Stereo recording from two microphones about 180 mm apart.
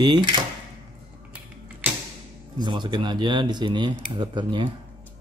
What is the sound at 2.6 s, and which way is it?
Speech, 25° right (ahead or behind).